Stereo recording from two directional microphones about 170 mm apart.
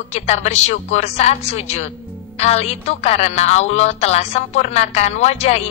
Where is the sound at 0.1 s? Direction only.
40° left (ahead or behind).